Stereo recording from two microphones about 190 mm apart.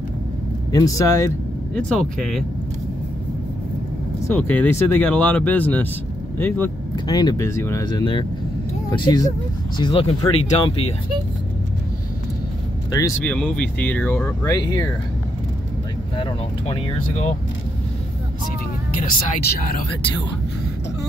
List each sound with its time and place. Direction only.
0.7 s speech: 20° left (ahead or behind)
1.8 s speech: centre (ahead or behind)
4.3 s speech: 10° left (ahead or behind)
7.1 s speech: 20° left (ahead or behind)
13.2 s speech: 5° left (ahead or behind)
16.2 s speech: 25° left (ahead or behind)
18.9 s speech: 45° left (ahead or behind)